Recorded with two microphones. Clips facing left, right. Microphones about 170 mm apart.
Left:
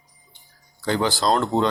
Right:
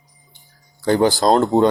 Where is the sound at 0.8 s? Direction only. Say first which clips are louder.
Right 6 dB; 45° right (ahead or behind).